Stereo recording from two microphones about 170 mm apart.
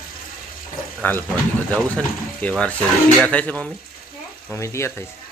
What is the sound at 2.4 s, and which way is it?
Speech, 5° left (ahead or behind).